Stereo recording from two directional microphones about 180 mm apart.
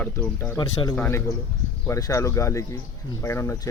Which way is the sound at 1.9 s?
20° left (ahead or behind).